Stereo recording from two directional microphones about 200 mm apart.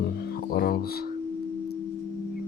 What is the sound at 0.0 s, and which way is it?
Music, 50° left (ahead or behind).